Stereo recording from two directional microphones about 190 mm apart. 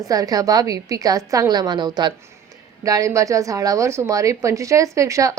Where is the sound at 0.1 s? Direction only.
20° right (ahead or behind).